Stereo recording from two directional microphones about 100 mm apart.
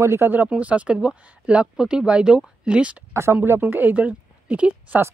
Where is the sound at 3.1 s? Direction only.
25° right (ahead or behind).